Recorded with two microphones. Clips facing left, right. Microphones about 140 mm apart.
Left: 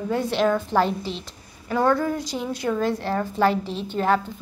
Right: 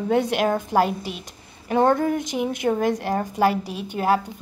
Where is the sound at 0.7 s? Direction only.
10° right (ahead or behind).